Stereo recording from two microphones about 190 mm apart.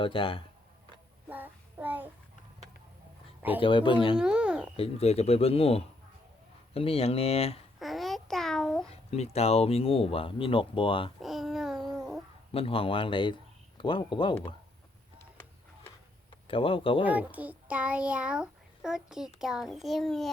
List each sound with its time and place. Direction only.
0.0 s speech: 25° left (ahead or behind)
1.3 s child singing: 10° right (ahead or behind)
3.6 s speech: 25° left (ahead or behind)
4.2 s a child's voice: 5° right (ahead or behind)
4.8 s speech: 35° left (ahead or behind)
7.8 s babbling: centre (ahead or behind)
9.0 s speech: 35° left (ahead or behind)
11.2 s babbling: centre (ahead or behind)
12.5 s speech: 30° left (ahead or behind)
16.5 s speech: 30° left (ahead or behind)
17.0 s a child's voice: 10° right (ahead or behind)